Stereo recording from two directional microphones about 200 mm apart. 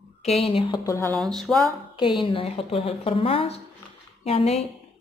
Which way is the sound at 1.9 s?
25° left (ahead or behind).